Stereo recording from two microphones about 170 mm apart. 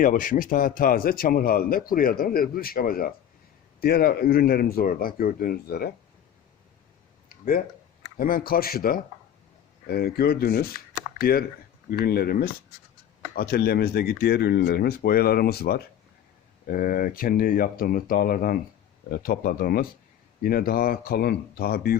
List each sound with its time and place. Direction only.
0.0 s speech: 55° left (ahead or behind)
7.3 s a sound: 60° left (ahead or behind)
8.1 s speech: 60° left (ahead or behind)
16.6 s speech: 55° left (ahead or behind)